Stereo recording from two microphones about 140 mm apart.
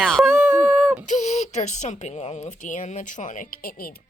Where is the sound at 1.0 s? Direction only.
60° left (ahead or behind).